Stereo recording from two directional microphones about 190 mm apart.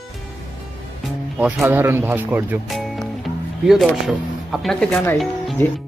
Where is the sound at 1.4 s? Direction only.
5° right (ahead or behind).